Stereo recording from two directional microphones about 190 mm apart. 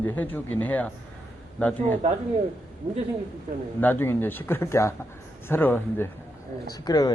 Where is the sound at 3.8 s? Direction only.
10° left (ahead or behind).